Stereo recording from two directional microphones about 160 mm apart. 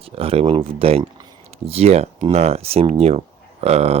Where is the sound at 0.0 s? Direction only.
35° right (ahead or behind).